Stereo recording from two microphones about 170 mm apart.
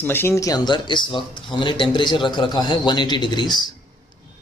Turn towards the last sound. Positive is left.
turn(degrees=25)  # may be behind; listen again after turning